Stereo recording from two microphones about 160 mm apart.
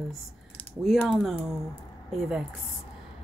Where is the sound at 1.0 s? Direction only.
5° right (ahead or behind).